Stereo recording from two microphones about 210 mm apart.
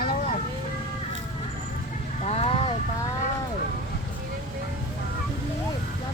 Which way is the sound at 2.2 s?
30° left (ahead or behind).